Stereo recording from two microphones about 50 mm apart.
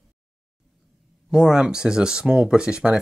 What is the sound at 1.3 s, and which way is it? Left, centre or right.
Speech, centre.